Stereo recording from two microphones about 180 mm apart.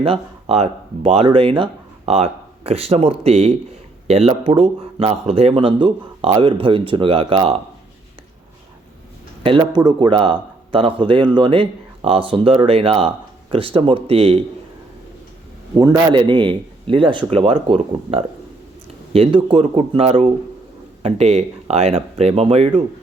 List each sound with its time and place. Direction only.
0.0 s speech: 30° right (ahead or behind)
9.4 s speech: 25° right (ahead or behind)
15.7 s speech: 20° right (ahead or behind)